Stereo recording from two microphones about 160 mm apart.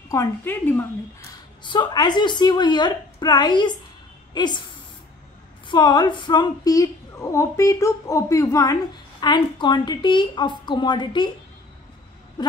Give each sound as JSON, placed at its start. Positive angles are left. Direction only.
{"t": 0.1, "sound": "speech", "side_deg": 15}
{"t": 1.6, "sound": "a woman's voice", "side_deg": 30}
{"t": 5.7, "sound": "a woman's voice", "side_deg": 25}